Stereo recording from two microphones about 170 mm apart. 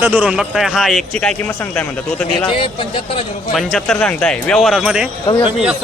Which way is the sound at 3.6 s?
Centre (ahead or behind).